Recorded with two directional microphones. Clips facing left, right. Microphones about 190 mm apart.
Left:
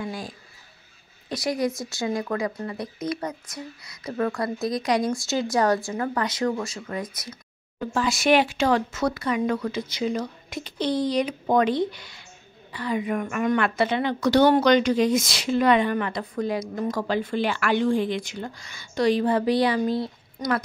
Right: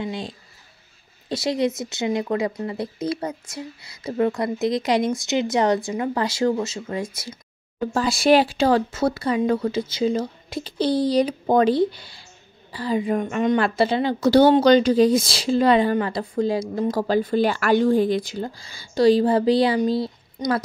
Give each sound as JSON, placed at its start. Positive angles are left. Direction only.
{"t": 0.0, "sound": "speech", "side_deg": -25}
{"t": 6.2, "sound": "a woman's voice", "side_deg": -30}